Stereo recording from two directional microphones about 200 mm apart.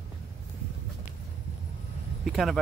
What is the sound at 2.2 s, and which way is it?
Speech, centre (ahead or behind).